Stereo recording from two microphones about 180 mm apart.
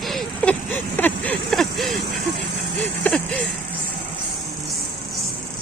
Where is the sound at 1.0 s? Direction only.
10° left (ahead or behind).